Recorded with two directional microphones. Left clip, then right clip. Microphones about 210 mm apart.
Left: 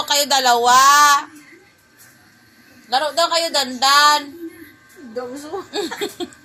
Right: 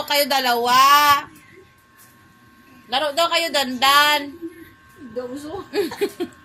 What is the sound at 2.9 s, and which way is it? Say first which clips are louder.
Speech: left 2 dB; 35° right (ahead or behind).